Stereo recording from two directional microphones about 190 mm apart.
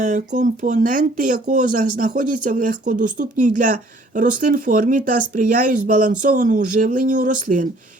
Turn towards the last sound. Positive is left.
turn(degrees=-45)  # may be behind; listen again after turning